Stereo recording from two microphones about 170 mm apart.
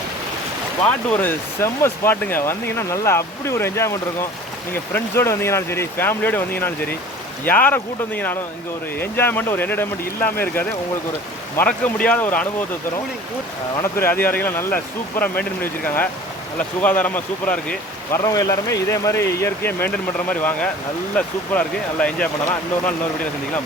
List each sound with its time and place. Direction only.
0.9 s speech: 10° left (ahead or behind)
13.7 s speech: 15° left (ahead or behind)
18.2 s speech: 20° left (ahead or behind)